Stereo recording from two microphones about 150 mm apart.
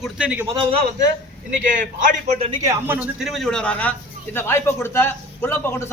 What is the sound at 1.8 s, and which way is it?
Speech, 55° right (ahead or behind).